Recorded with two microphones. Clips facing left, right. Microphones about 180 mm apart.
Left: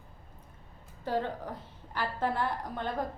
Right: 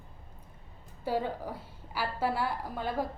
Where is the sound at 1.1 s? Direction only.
10° right (ahead or behind).